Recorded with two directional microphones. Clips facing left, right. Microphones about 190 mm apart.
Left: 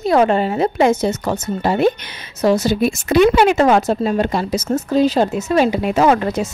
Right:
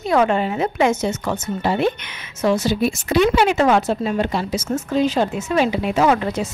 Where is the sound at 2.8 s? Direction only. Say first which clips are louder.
Left 4 dB; 50° left (ahead or behind).